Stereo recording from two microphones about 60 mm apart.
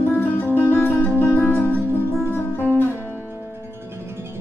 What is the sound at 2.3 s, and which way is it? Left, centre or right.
Music, left.